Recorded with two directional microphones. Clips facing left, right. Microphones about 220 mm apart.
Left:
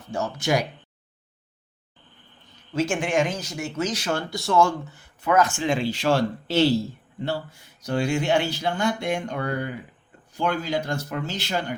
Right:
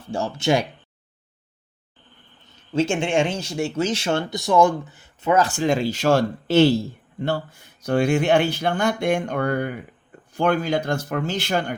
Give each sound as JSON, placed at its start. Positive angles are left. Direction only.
{"t": 0.1, "sound": "speech", "side_deg": -30}
{"t": 2.7, "sound": "speech", "side_deg": -25}
{"t": 7.9, "sound": "speech", "side_deg": -55}